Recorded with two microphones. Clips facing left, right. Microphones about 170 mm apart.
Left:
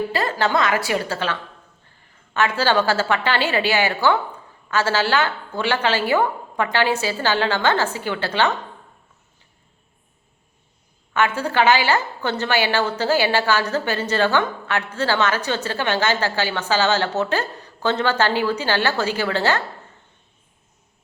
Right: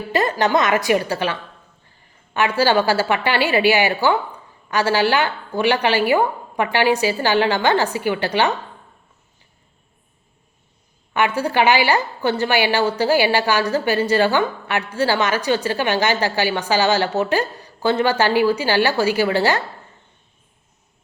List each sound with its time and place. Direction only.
0.1 s a woman's voice: 20° right (ahead or behind)
11.1 s a woman's voice: 15° right (ahead or behind)